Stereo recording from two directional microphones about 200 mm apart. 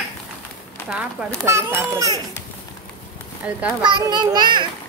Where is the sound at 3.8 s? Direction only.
20° right (ahead or behind).